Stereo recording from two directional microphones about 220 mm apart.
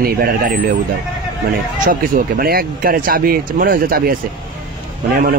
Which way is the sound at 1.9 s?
40° right (ahead or behind).